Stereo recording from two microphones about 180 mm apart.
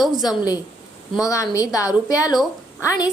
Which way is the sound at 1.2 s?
20° left (ahead or behind).